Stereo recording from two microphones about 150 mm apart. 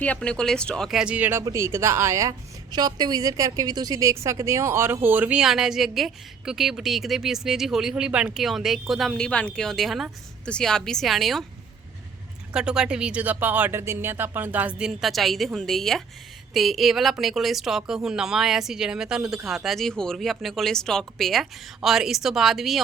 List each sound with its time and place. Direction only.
0.0 s a woman's voice: 10° left (ahead or behind)
12.5 s a woman's voice: 5° right (ahead or behind)